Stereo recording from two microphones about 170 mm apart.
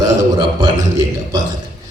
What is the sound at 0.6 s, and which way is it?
Speech, 20° right (ahead or behind).